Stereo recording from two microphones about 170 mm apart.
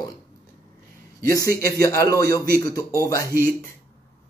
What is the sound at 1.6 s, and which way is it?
Speech, 20° left (ahead or behind).